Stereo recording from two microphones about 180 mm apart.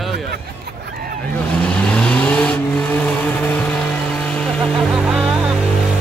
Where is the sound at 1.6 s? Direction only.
5° left (ahead or behind).